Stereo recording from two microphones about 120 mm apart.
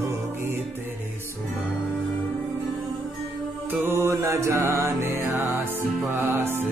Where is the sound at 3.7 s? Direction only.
20° right (ahead or behind).